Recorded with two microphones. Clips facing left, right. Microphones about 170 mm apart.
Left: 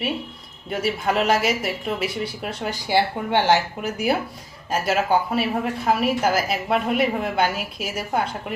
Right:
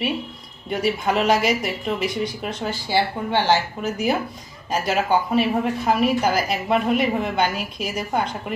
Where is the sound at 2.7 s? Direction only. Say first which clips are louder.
Left 2 dB; 15° left (ahead or behind).